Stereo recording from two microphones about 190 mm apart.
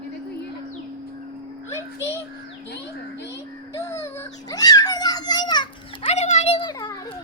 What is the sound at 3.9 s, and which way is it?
Baby cry, 15° left (ahead or behind).